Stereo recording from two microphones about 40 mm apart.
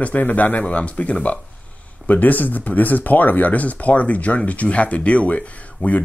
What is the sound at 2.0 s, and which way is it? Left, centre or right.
Speech, left.